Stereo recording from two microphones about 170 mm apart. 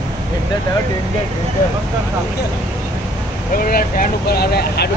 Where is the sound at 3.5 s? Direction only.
55° left (ahead or behind).